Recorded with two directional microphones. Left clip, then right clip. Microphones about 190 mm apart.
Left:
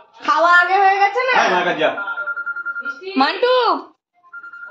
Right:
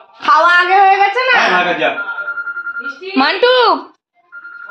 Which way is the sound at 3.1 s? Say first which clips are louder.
Right 5 dB; 40° right (ahead or behind).